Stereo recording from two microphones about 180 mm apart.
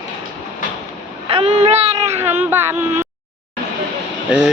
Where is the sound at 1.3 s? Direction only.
30° right (ahead or behind).